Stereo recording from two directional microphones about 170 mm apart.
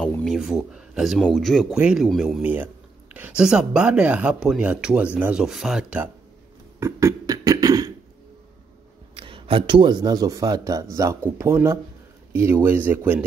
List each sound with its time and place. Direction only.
0.0 s speech: 5° left (ahead or behind)
6.8 s beatboxing: 20° right (ahead or behind)
9.1 s speech: 30° right (ahead or behind); by 13.2 s 10° right (ahead or behind)